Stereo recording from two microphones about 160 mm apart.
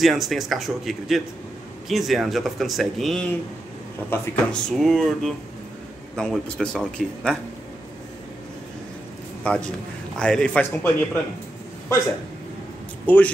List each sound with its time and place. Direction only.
0.0 s speech: centre (ahead or behind)
9.4 s a man's voice: 5° left (ahead or behind)
13.0 s speech: 10° left (ahead or behind)